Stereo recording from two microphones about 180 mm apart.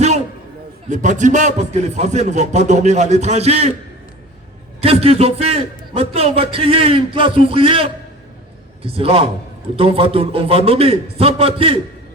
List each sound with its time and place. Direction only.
0.9 s a man's voice: 45° right (ahead or behind)
4.8 s a man's voice: 35° right (ahead or behind)